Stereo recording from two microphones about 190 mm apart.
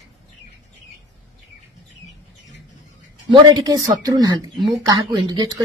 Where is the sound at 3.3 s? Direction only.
20° right (ahead or behind).